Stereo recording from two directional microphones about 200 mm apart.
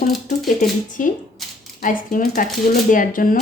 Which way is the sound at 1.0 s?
40° left (ahead or behind).